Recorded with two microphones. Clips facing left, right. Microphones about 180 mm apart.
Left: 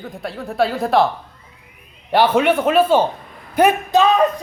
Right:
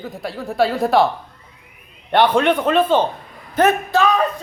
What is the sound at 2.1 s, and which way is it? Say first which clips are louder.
A man's voice: even; 5° left (ahead or behind).